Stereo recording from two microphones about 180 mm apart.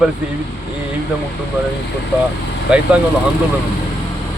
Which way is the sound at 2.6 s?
5° right (ahead or behind).